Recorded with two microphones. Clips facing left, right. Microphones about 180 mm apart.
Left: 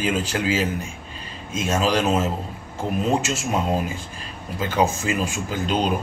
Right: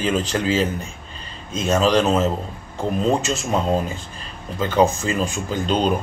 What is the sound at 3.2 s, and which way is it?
Speech, 5° left (ahead or behind).